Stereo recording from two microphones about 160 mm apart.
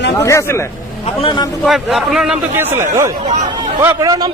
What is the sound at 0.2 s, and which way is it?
Speech, 20° left (ahead or behind).